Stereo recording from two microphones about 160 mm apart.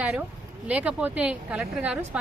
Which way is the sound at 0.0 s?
10° right (ahead or behind).